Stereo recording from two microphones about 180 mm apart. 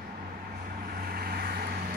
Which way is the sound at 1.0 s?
60° right (ahead or behind).